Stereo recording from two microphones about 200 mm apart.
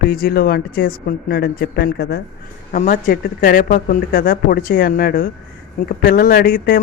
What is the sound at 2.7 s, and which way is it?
A woman's voice, 40° left (ahead or behind).